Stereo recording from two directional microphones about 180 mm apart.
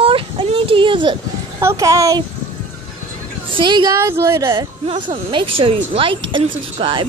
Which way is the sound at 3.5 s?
25° right (ahead or behind).